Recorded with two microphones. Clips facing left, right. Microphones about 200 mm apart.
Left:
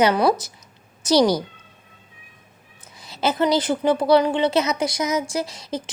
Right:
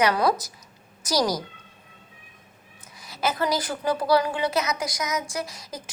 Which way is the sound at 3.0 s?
25° left (ahead or behind).